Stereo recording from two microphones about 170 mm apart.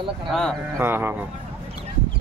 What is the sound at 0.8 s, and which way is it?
Speech, 15° right (ahead or behind).